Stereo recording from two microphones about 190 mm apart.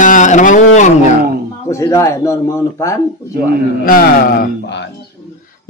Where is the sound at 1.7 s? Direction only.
15° left (ahead or behind).